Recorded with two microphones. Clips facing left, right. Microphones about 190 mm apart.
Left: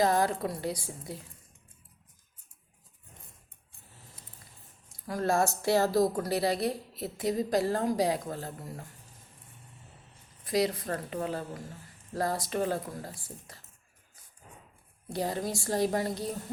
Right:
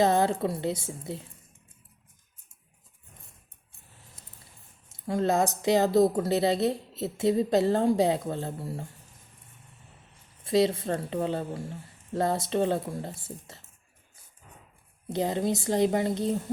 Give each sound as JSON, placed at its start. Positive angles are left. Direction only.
{"t": 0.0, "sound": "speech", "side_deg": -25}
{"t": 4.9, "sound": "speech", "side_deg": -25}
{"t": 10.4, "sound": "speech", "side_deg": -25}
{"t": 15.1, "sound": "speech", "side_deg": -20}